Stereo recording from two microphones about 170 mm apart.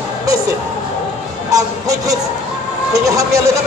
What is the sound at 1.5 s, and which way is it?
A man's voice, 20° right (ahead or behind).